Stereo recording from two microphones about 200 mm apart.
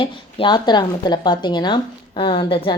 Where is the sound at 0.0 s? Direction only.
25° left (ahead or behind).